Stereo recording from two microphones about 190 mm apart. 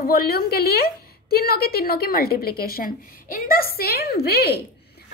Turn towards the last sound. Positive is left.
turn(degrees=55)  # may be behind; listen again after turning